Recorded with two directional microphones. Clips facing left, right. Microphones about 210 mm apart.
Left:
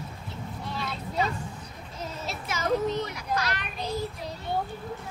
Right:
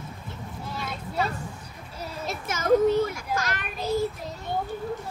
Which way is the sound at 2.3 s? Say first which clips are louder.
Right 6 dB; 50° right (ahead or behind).